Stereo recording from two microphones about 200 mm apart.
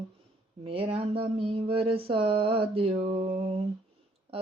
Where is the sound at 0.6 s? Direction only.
30° right (ahead or behind).